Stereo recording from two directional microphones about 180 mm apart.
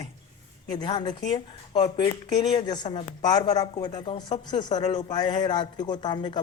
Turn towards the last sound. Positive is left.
turn(degrees=25)  # may be behind; listen again after turning